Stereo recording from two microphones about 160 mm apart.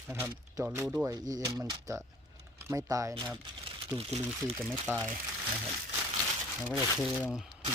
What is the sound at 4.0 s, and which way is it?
Speech, 40° right (ahead or behind).